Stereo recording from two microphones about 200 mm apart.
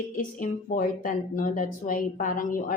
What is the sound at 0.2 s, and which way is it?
Speech, 40° left (ahead or behind).